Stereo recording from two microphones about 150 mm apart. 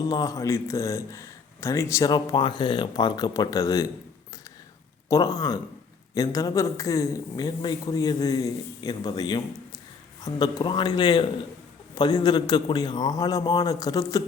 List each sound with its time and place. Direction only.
0.0 s a man's voice: 25° left (ahead or behind)
5.0 s a man's voice: 20° left (ahead or behind)